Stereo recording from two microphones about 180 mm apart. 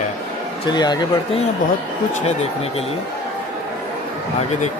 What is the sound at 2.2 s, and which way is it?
Speech, 35° left (ahead or behind).